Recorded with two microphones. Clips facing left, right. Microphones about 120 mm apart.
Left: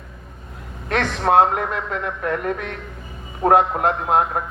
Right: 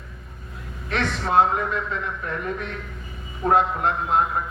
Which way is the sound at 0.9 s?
55° left (ahead or behind).